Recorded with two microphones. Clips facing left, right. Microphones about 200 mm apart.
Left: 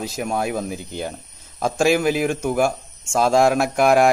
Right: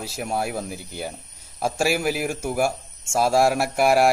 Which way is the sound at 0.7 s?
5° right (ahead or behind).